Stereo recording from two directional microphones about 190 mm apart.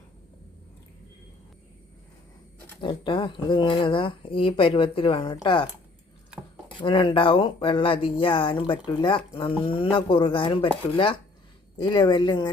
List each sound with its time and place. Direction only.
2.8 s speech: 25° left (ahead or behind)
6.7 s speech: 25° left (ahead or behind)